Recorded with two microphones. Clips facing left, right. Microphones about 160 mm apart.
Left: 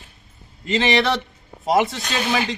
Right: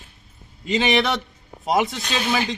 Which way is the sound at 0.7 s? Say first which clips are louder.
Left 1 dB; centre (ahead or behind).